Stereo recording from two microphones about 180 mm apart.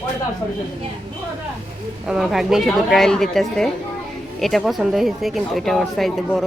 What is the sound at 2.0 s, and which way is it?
Speech, centre (ahead or behind).